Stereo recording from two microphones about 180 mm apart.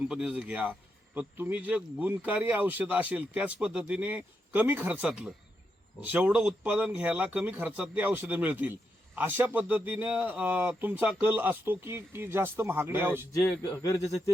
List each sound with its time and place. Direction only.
0.1 s speech: 5° right (ahead or behind)
13.6 s a man's voice: 20° left (ahead or behind)